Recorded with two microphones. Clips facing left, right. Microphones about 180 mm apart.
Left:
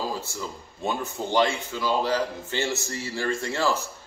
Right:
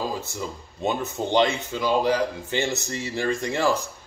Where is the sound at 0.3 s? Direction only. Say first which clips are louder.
Right 2 dB; 20° right (ahead or behind).